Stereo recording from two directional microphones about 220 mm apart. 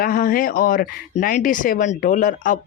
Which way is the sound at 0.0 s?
40° left (ahead or behind).